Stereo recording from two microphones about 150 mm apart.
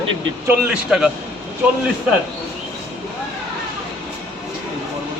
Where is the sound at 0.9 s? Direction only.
5° right (ahead or behind).